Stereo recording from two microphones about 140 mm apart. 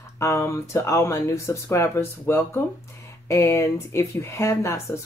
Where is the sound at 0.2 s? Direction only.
20° left (ahead or behind).